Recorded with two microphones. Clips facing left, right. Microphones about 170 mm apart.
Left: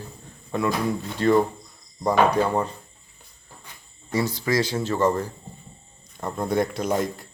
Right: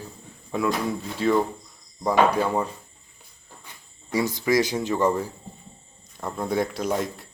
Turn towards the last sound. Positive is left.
turn(degrees=0)  # may be behind; listen again after turning